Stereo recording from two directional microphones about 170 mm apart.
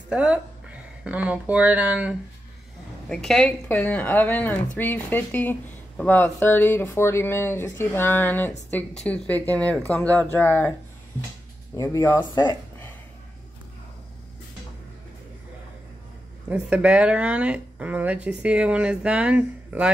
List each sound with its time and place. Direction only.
0.1 s speech: 5° right (ahead or behind)
3.1 s speech: centre (ahead or behind)
11.7 s speech: 20° left (ahead or behind)
16.4 s speech: 5° right (ahead or behind)